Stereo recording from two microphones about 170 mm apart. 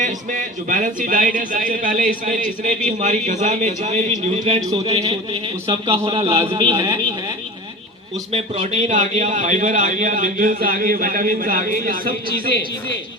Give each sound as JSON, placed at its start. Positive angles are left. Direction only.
{"t": 0.0, "sound": "a man's voice", "side_deg": -50}
{"t": 8.3, "sound": "speech", "side_deg": -40}